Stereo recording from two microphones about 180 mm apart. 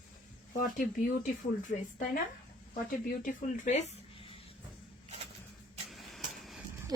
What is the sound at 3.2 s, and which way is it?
Speech, 45° left (ahead or behind).